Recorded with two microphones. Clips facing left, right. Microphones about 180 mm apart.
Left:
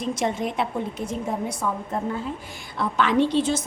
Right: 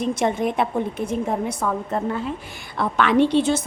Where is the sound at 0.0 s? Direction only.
55° right (ahead or behind).